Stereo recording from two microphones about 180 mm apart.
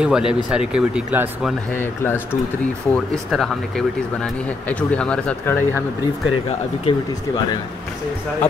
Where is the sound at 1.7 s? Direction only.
10° left (ahead or behind).